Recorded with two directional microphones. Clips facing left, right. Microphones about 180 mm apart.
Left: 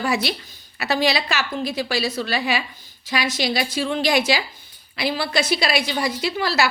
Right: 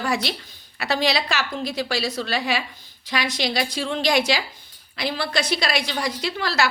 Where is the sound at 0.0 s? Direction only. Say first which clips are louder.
Left 2 dB; 5° left (ahead or behind).